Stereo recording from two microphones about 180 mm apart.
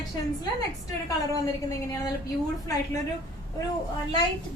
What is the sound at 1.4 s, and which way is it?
Speech, 20° left (ahead or behind).